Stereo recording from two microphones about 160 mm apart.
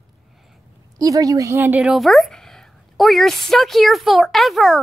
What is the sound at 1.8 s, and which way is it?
A woman's voice, centre (ahead or behind).